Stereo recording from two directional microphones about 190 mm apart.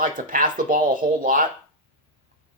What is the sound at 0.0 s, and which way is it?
Speech, 45° right (ahead or behind).